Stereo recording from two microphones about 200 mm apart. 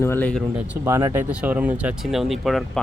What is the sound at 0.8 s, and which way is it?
Speech, 15° right (ahead or behind).